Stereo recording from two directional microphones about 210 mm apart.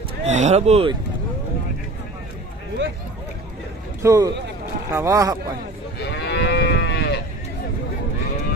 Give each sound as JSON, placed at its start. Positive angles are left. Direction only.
{"t": 0.2, "sound": "speech", "side_deg": -35}
{"t": 4.0, "sound": "speech", "side_deg": -15}
{"t": 5.9, "sound": "livestock", "side_deg": 50}